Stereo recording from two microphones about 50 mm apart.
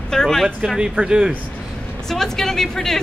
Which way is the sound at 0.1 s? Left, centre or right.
Centre.